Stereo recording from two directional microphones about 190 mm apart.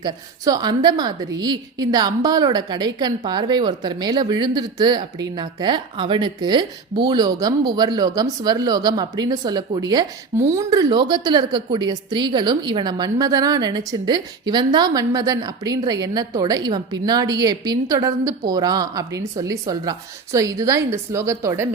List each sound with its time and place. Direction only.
0.0 s a woman's voice: 20° right (ahead or behind)